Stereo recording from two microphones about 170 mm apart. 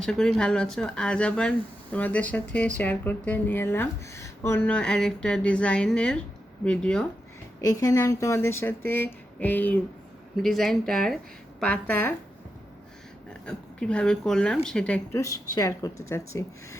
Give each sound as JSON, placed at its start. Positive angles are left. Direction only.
{"t": 0.0, "sound": "speech", "side_deg": 5}
{"t": 7.6, "sound": "speech", "side_deg": 20}
{"t": 13.4, "sound": "speech", "side_deg": 5}
{"t": 15.5, "sound": "speech", "side_deg": 20}